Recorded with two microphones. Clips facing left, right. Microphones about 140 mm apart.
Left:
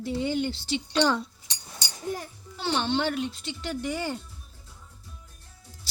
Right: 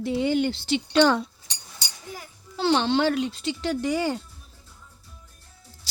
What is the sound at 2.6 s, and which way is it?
Speech, 90° right.